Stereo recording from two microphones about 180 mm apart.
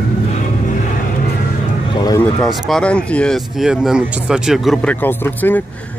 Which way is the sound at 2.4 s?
Centre (ahead or behind).